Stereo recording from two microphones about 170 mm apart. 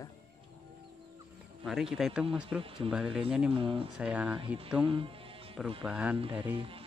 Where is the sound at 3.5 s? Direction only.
30° right (ahead or behind).